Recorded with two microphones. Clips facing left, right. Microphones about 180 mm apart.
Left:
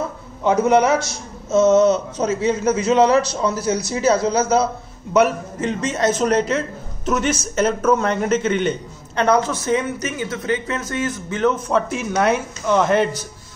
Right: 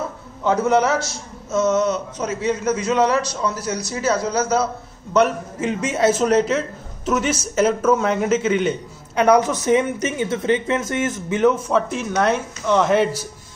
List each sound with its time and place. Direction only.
0.4 s a man's voice: 15° left (ahead or behind)
5.6 s a man's voice: 10° right (ahead or behind)
11.6 s speech: centre (ahead or behind)